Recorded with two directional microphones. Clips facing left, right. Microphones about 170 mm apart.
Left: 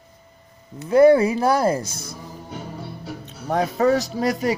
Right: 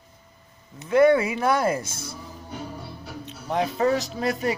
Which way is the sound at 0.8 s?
35° left (ahead or behind).